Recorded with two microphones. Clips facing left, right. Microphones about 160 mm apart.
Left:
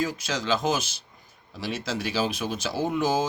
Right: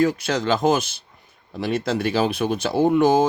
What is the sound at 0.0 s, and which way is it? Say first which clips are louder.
Speech: right 8 dB; 60° right (ahead or behind).